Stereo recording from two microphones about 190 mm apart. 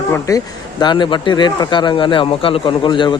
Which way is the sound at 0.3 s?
20° left (ahead or behind).